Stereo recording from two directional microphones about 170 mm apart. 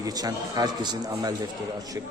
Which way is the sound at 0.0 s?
20° right (ahead or behind).